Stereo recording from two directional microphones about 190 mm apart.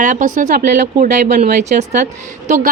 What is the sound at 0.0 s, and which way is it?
A woman's voice, 40° right (ahead or behind).